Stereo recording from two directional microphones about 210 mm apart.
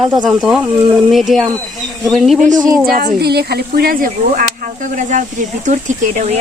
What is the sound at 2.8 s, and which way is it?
Speech, 45° right (ahead or behind).